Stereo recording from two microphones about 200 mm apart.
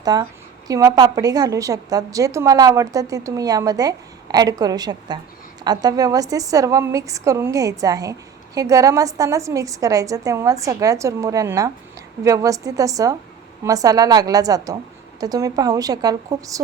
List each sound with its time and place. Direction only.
0.0 s a woman's voice: 20° right (ahead or behind)